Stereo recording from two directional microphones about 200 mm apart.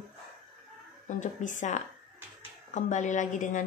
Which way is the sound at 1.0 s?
40° left (ahead or behind).